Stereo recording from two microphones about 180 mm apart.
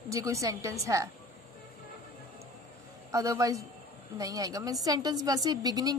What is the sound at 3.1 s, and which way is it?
A woman's voice, 15° right (ahead or behind).